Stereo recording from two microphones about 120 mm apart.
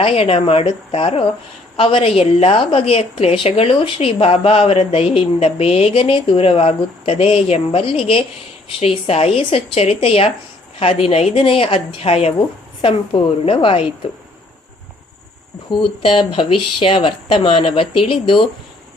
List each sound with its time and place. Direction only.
0.0 s a woman's voice: 55° left (ahead or behind)
15.7 s a woman's voice: 45° left (ahead or behind)